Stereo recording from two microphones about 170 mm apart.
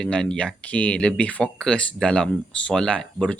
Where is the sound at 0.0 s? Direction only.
5° left (ahead or behind).